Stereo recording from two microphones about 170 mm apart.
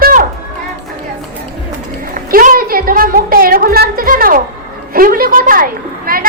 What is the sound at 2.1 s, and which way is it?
A woman's voice, 55° right (ahead or behind).